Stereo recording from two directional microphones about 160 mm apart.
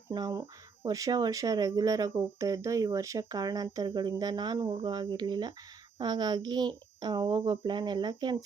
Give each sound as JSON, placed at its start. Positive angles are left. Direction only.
{"t": 0.1, "sound": "speech", "side_deg": -25}